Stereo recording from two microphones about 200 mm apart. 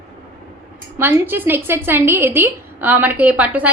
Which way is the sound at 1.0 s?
10° right (ahead or behind).